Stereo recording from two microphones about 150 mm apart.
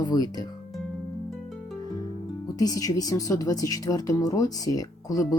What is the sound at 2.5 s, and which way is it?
Speech, 25° left (ahead or behind).